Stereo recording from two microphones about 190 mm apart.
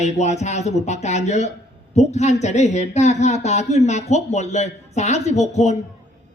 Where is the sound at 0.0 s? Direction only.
35° left (ahead or behind).